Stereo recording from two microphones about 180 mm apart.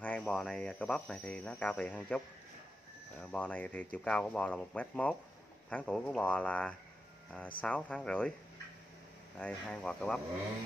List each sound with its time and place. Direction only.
0.0 s cricket: 5° left (ahead or behind)
3.2 s speech: 5° left (ahead or behind)
9.4 s cricket: 5° left (ahead or behind)